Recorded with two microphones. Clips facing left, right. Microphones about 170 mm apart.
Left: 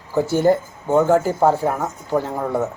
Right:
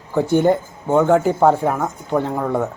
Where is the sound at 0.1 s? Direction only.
5° left (ahead or behind).